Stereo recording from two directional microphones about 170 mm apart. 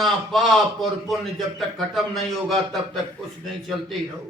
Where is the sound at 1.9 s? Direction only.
Centre (ahead or behind).